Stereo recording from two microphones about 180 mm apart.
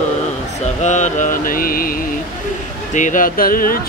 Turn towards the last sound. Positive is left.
turn(degrees=50)  # may be behind; listen again after turning